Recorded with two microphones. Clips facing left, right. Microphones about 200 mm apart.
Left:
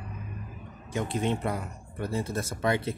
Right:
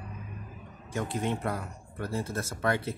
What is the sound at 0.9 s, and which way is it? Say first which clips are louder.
Speech: left 2 dB; 20° left (ahead or behind).